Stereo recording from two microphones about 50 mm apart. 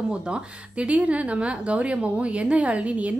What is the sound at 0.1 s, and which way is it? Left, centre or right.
A woman's voice, right.